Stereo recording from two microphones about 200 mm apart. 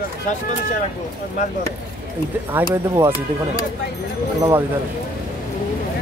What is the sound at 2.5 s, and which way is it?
Speech, 10° right (ahead or behind).